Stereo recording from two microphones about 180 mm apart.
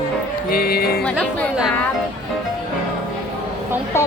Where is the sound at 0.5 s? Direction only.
55° left (ahead or behind).